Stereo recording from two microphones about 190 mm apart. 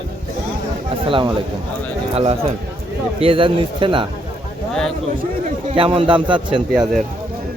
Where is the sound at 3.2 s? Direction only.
30° right (ahead or behind).